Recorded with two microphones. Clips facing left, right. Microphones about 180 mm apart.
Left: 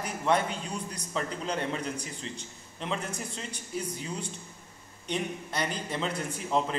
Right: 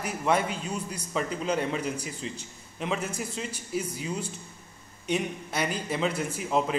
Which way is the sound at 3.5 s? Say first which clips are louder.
Right 3 dB; 5° right (ahead or behind).